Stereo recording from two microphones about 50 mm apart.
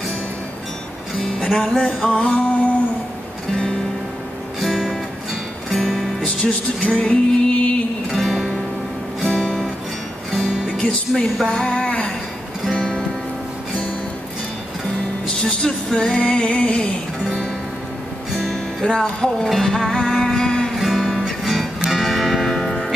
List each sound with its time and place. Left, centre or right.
1.2 s music: centre
4.6 s music: centre
6.4 s music: left
8.2 s music: centre
9.2 s music: centre
11.1 s music: centre
11.4 s a sound: centre
12.6 s music: centre
15.4 s music: centre
18.3 s music: centre
18.9 s music: centre
20.7 s music: centre